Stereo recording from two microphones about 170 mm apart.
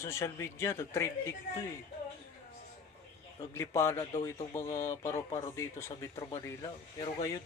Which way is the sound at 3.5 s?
15° left (ahead or behind).